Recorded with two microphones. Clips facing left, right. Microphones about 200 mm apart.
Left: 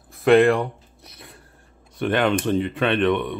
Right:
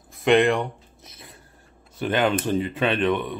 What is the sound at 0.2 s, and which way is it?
Speech, 5° left (ahead or behind).